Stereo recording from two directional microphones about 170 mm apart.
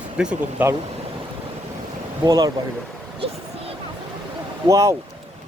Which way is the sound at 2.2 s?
20° right (ahead or behind).